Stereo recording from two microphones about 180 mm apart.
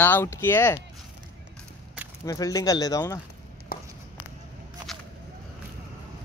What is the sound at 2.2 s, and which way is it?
Speech, 20° left (ahead or behind).